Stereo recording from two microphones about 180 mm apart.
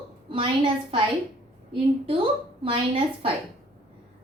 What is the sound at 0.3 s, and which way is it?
A woman's voice, 30° right (ahead or behind).